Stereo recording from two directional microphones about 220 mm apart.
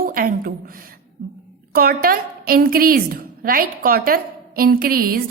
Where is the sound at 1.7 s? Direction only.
40° right (ahead or behind).